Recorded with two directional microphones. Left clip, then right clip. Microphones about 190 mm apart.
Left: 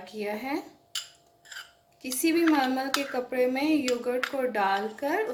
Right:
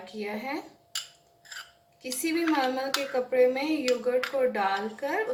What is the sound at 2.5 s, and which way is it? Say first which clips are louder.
Speech: left 1 dB; 55° left (ahead or behind).